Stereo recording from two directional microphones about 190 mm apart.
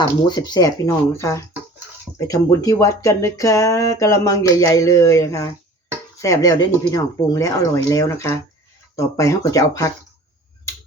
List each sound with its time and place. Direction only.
0.3 s speech: 20° left (ahead or behind)